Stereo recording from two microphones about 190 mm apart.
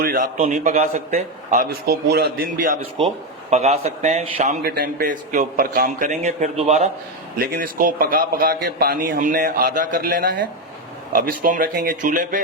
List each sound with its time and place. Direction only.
0.0 s a man's voice: 50° right (ahead or behind)
2.0 s speech: 60° right (ahead or behind)
3.5 s a man's voice: 35° right (ahead or behind)
6.1 s a man's voice: 35° right (ahead or behind)
7.3 s a man's voice: 50° right (ahead or behind)